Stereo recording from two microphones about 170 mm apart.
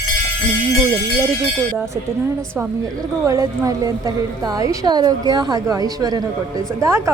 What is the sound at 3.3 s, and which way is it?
A woman's voice, 20° right (ahead or behind).